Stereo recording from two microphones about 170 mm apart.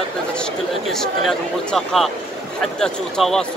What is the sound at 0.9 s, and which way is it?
Speech, centre (ahead or behind).